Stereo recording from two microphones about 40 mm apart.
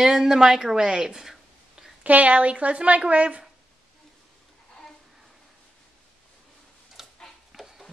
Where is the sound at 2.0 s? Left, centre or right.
Right.